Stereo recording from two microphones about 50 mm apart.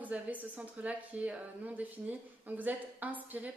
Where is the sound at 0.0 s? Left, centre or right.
Right.